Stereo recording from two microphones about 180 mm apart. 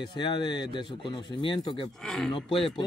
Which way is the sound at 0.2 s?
25° left (ahead or behind).